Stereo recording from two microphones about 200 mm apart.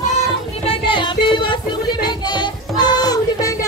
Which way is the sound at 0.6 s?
25° left (ahead or behind).